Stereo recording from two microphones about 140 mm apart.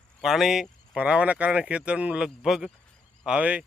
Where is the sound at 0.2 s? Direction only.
Centre (ahead or behind).